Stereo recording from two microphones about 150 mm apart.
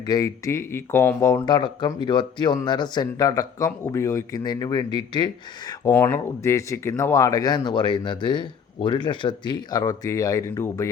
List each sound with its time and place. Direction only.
0.1 s speech: 25° left (ahead or behind)
5.9 s speech: 15° left (ahead or behind)